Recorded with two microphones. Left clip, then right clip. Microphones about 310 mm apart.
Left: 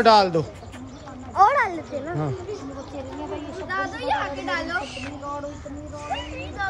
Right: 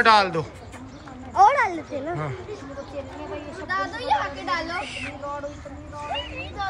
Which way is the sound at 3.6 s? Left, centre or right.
Centre.